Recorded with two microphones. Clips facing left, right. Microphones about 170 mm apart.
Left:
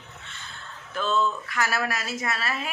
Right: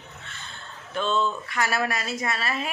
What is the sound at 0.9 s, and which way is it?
Speech, 30° right (ahead or behind).